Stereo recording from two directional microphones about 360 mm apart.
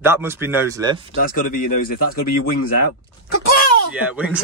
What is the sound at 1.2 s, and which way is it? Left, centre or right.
Speech, left.